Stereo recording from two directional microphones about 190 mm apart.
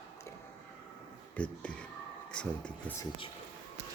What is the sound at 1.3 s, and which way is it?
Speech, 5° left (ahead or behind).